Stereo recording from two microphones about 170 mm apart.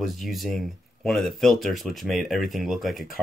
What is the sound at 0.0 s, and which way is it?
Speech, centre (ahead or behind).